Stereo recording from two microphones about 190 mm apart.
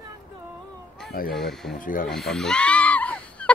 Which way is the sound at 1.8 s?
45° left (ahead or behind).